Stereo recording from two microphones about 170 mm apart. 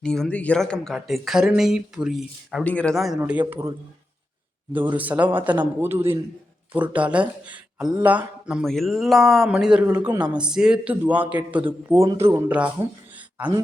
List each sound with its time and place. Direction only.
0.0 s a man's voice: 5° left (ahead or behind)
4.9 s a man's voice: 10° right (ahead or behind)